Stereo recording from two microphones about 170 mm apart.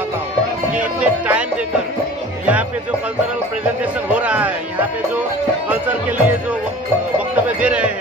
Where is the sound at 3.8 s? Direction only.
10° right (ahead or behind).